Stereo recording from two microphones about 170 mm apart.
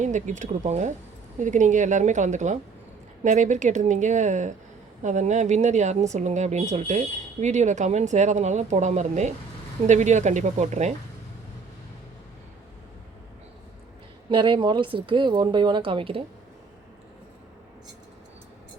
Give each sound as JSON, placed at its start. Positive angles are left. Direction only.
{"t": 0.0, "sound": "speech", "side_deg": -45}
{"t": 14.3, "sound": "speech", "side_deg": -30}